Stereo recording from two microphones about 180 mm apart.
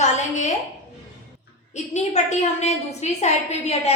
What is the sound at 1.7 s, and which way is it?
A woman's voice, 40° left (ahead or behind).